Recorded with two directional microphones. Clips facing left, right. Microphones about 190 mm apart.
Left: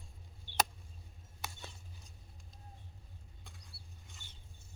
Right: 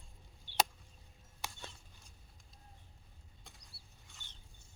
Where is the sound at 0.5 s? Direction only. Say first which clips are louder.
Even; 50° left (ahead or behind).